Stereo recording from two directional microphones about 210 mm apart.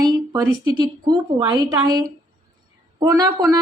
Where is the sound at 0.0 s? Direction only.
20° right (ahead or behind).